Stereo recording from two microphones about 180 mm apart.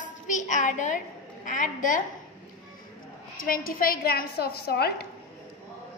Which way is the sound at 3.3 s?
50° left (ahead or behind).